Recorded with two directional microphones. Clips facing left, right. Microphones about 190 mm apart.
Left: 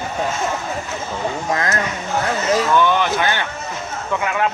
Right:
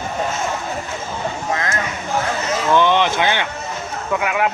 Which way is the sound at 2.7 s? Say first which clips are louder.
Right 1 dB; 20° right (ahead or behind).